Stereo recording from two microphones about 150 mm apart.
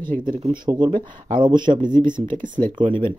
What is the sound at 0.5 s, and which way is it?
Speech, 30° right (ahead or behind).